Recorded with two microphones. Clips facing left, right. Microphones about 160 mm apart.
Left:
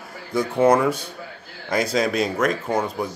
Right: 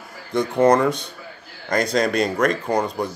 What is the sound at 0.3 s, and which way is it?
Speech, 5° left (ahead or behind).